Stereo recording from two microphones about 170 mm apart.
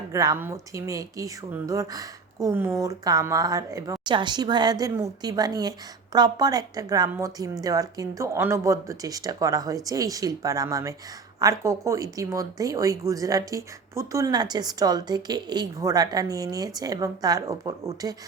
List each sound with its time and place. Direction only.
0.1 s speech: 20° right (ahead or behind)